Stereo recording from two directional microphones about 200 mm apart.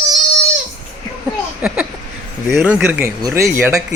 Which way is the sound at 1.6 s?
5° right (ahead or behind).